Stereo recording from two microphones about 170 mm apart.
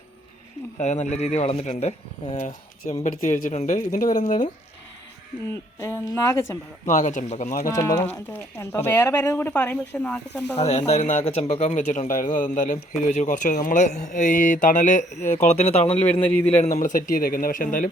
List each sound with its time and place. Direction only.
0.8 s speech: 40° left (ahead or behind)
3.0 s speech: 45° left (ahead or behind)
5.8 s speech: 20° left (ahead or behind)
6.8 s speech: 45° left (ahead or behind)
7.8 s speech: 20° left (ahead or behind)
10.5 s speech: 40° left (ahead or behind)
16.2 s speech: 10° left (ahead or behind)
16.6 s speech: 45° left (ahead or behind)